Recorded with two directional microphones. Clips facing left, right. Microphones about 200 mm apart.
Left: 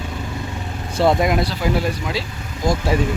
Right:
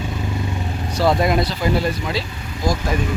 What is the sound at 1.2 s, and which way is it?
Speech, 10° left (ahead or behind).